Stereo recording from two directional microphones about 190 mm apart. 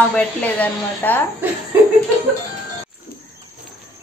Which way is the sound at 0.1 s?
10° left (ahead or behind).